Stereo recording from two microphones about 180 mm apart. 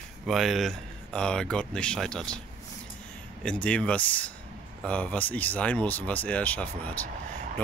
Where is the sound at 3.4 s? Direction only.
5° left (ahead or behind).